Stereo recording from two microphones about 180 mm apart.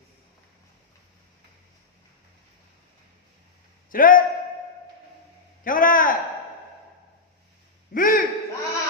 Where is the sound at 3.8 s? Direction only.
50° left (ahead or behind).